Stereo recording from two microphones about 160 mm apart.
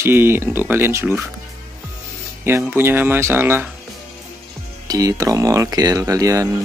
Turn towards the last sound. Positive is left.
turn(degrees=-20)  # may be behind; listen again after turning